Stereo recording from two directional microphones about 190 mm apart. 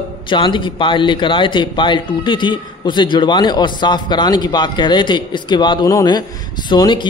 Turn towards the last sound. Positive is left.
turn(degrees=25)  # may be behind; listen again after turning